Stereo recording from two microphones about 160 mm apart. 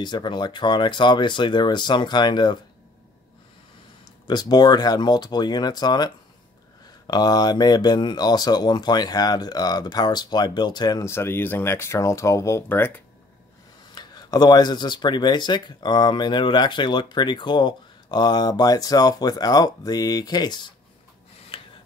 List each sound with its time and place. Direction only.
0.0 s speech: 30° left (ahead or behind)
4.0 s speech: 25° left (ahead or behind)
13.9 s speech: 25° left (ahead or behind)
21.5 s filing: 35° left (ahead or behind)